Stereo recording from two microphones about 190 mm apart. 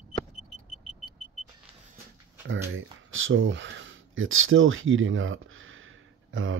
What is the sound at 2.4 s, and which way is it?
Speech, 90° right.